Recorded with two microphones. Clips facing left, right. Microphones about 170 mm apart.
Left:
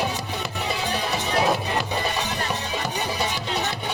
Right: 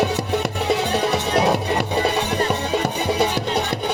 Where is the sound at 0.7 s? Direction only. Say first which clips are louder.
Right 7 dB; 65° right (ahead or behind).